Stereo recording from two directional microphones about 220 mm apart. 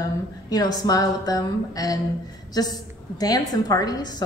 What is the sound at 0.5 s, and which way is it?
A woman's voice, 15° left (ahead or behind).